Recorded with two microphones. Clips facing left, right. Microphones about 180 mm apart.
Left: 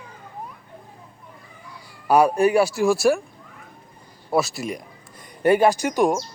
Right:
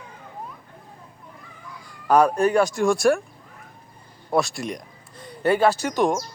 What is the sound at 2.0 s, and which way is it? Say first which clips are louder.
Speech: left 1 dB; 10° left (ahead or behind).